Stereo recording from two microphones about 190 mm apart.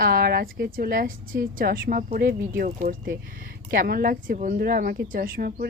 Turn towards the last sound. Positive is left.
turn(degrees=-50)  # may be behind; listen again after turning